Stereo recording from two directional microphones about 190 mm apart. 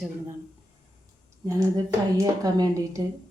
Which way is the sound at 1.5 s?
15° right (ahead or behind).